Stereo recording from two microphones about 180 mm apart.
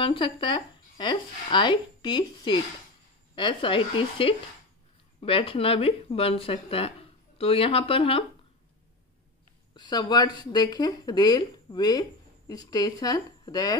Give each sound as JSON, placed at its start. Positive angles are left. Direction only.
{"t": 0.0, "sound": "speech", "side_deg": 30}
{"t": 9.8, "sound": "speech", "side_deg": 20}